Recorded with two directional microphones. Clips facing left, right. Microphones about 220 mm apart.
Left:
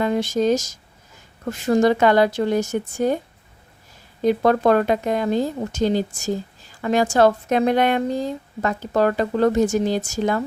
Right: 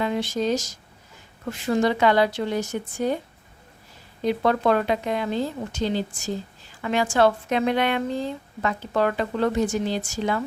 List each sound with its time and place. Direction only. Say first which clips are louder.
0.0 s speech: left 5 dB; 45° left (ahead or behind)
4.2 s speech: left 5 dB; 45° left (ahead or behind)